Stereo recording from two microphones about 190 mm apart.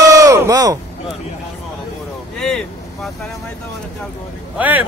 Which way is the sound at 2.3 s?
5° left (ahead or behind).